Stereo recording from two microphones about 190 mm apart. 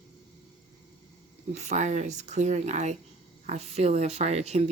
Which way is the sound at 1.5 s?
35° right (ahead or behind).